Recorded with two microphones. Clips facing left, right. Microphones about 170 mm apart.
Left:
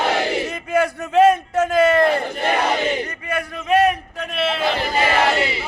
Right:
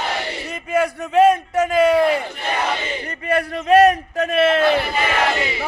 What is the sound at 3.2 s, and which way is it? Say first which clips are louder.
A man's voice: right 9 dB; 35° right (ahead or behind).